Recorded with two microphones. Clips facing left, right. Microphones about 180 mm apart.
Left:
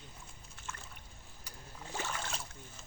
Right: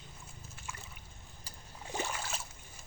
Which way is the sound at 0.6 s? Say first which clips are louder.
Left 1 dB; 10° right (ahead or behind).